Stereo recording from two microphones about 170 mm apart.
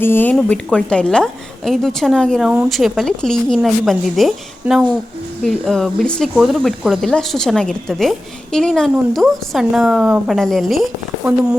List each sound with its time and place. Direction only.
0.0 s speech: 10° left (ahead or behind)